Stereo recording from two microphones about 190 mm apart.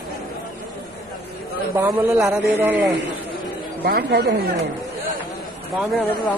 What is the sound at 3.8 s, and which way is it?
Speech, 55° right (ahead or behind).